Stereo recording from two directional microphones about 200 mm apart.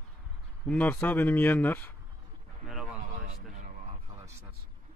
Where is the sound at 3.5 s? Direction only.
40° right (ahead or behind).